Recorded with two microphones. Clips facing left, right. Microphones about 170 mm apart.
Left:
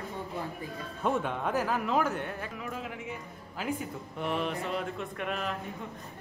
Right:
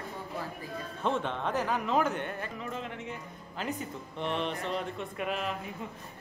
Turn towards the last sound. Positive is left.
turn(degrees=0)  # may be behind; listen again after turning